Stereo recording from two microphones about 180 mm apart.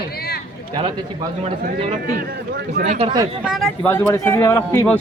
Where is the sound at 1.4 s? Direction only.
30° right (ahead or behind).